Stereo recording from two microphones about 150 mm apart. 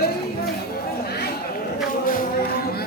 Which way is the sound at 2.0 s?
70° left (ahead or behind).